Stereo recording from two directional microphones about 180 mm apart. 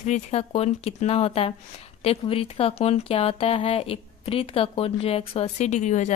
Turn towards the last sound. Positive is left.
turn(degrees=40)  # may be behind; listen again after turning